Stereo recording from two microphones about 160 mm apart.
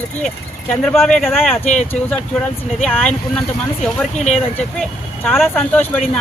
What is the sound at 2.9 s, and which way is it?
Speech, 5° left (ahead or behind).